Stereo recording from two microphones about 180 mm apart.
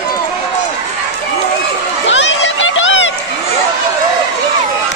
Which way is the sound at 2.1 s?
90° left.